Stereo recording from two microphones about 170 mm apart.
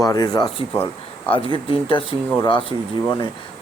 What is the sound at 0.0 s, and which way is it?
Speech, 20° left (ahead or behind).